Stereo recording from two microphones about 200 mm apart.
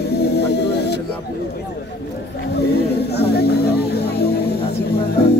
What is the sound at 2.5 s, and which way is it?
Music, 55° left (ahead or behind).